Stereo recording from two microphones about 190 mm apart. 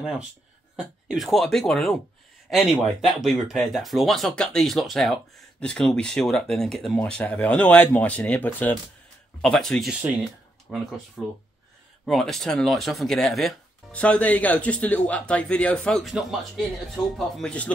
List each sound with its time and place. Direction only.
0.0 s speech: 5° right (ahead or behind)